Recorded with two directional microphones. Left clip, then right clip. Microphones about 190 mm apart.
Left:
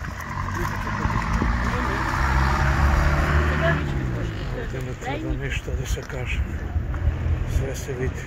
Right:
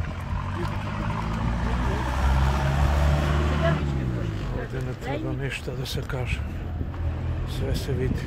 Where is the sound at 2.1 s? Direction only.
50° right (ahead or behind).